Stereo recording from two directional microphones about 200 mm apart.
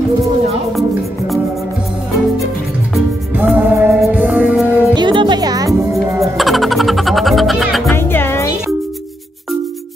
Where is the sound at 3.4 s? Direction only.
10° right (ahead or behind).